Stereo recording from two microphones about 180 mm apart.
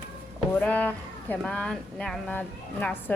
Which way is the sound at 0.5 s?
10° left (ahead or behind).